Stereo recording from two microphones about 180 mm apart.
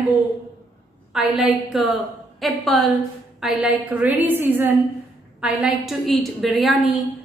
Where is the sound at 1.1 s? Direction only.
Centre (ahead or behind).